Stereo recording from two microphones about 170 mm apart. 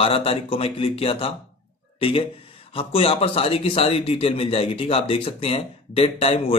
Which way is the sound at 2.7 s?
35° left (ahead or behind).